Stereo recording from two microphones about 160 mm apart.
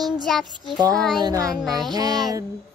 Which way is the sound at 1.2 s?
25° right (ahead or behind).